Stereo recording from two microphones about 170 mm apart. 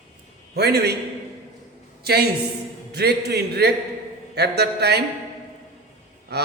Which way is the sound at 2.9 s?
70° right (ahead or behind).